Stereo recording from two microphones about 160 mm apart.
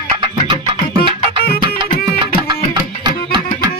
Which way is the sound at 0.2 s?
30° right (ahead or behind).